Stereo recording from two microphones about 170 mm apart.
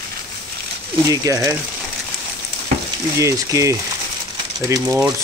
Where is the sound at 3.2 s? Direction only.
20° right (ahead or behind).